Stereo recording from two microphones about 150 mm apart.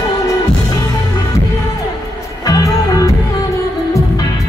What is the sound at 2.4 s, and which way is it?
Music, 25° left (ahead or behind).